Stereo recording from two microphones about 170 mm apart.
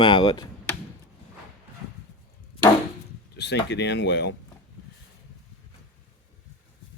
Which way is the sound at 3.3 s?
90° left.